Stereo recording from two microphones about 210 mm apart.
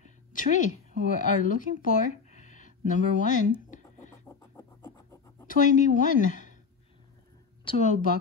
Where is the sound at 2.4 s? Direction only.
35° left (ahead or behind).